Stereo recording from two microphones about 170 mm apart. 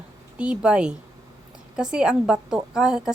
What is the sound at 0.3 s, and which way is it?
A woman's voice, 5° right (ahead or behind).